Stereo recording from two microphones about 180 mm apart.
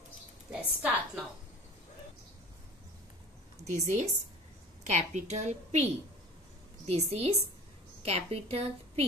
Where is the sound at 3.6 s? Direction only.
40° right (ahead or behind).